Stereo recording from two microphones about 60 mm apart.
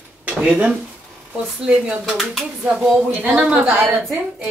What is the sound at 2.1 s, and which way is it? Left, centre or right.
Speech, centre.